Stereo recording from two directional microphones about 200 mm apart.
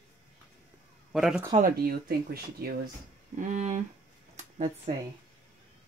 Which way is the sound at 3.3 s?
40° right (ahead or behind).